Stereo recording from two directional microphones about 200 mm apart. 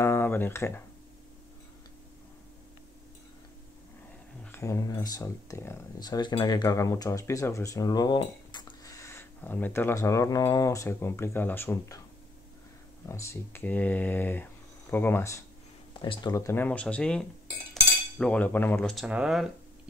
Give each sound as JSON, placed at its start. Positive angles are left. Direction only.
{"t": 0.0, "sound": "speech", "side_deg": 10}
{"t": 4.5, "sound": "speech", "side_deg": 15}
{"t": 13.1, "sound": "speech", "side_deg": 15}
{"t": 15.9, "sound": "speech", "side_deg": 25}
{"t": 19.0, "sound": "speech", "side_deg": -5}